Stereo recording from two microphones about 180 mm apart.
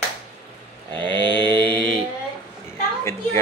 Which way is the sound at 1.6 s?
10° left (ahead or behind).